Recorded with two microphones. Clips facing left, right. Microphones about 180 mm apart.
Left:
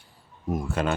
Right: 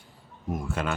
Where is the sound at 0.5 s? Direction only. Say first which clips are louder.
Left 4 dB; 35° left (ahead or behind).